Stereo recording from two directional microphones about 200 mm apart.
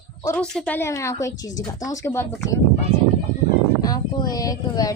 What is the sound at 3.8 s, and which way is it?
Speech, 20° left (ahead or behind).